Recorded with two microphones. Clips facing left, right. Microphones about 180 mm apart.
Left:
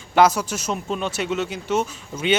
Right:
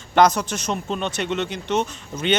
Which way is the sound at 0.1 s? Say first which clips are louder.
Even; 5° left (ahead or behind).